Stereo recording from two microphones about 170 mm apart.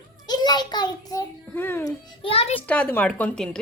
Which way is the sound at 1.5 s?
10° left (ahead or behind).